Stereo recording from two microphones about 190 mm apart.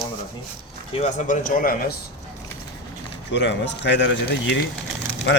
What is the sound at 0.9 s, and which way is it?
Speech, 40° left (ahead or behind).